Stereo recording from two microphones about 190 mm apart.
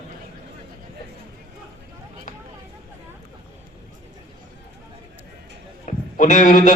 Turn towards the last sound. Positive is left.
turn(degrees=45)  # may be behind; listen again after turning